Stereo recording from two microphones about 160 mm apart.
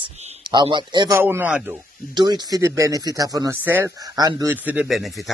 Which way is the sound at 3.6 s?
10° right (ahead or behind).